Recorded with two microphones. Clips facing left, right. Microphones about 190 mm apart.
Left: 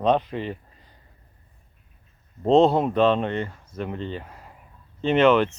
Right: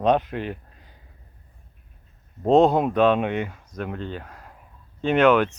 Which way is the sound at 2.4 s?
Centre (ahead or behind).